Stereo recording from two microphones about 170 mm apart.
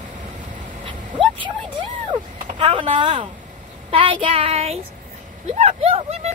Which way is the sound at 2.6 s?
30° right (ahead or behind).